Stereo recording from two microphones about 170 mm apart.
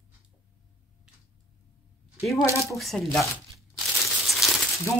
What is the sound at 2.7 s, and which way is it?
Speech, centre (ahead or behind).